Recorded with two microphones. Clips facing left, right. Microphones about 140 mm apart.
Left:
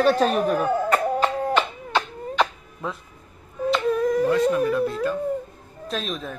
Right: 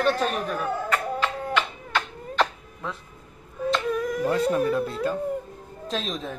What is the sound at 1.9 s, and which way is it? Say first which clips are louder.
Chop: left 2 dB; 15° left (ahead or behind).